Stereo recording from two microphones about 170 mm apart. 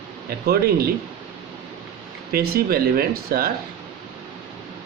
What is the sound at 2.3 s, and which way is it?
Speech, 65° right (ahead or behind).